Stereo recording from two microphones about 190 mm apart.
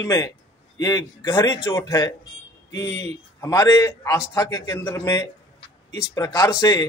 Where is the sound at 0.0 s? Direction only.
15° left (ahead or behind).